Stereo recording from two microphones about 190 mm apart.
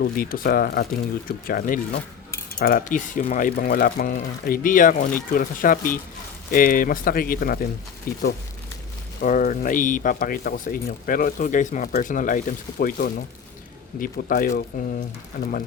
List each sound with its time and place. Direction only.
0.0 s speech: 50° left (ahead or behind)
9.2 s speech: 45° left (ahead or behind)